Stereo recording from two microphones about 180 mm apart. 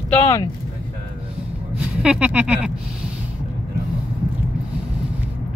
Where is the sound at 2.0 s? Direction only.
5° right (ahead or behind).